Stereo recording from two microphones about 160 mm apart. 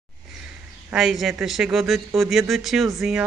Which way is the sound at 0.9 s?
Centre (ahead or behind).